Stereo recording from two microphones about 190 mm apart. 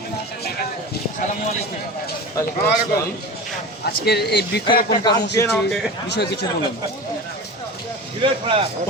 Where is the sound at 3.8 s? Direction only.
55° left (ahead or behind).